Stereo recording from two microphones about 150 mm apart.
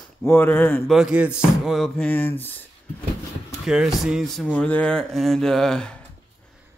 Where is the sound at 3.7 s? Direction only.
5° right (ahead or behind).